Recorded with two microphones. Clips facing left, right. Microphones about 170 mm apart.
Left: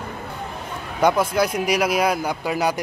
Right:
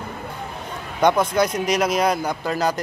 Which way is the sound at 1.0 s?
5° left (ahead or behind).